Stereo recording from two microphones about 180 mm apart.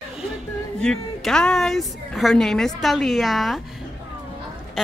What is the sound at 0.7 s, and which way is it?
Speech, 5° left (ahead or behind).